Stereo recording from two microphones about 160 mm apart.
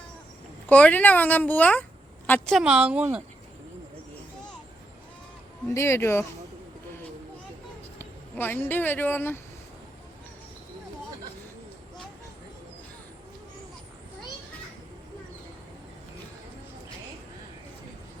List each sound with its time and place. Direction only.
0.7 s speech: 10° left (ahead or behind)
2.6 s a woman's voice: 5° right (ahead or behind)
5.6 s speech: 15° left (ahead or behind)
7.9 s speech: 15° left (ahead or behind)